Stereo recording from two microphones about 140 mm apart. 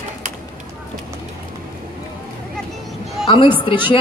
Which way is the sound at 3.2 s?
35° left (ahead or behind).